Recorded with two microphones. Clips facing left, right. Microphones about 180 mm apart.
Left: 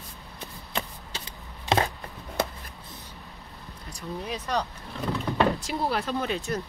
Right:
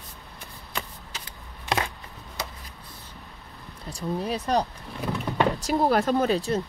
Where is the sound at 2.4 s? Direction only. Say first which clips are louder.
Left 7 dB; 55° left (ahead or behind).